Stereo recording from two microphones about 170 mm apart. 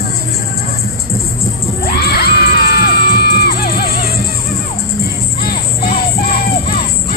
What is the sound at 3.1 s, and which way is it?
Music, 65° left (ahead or behind).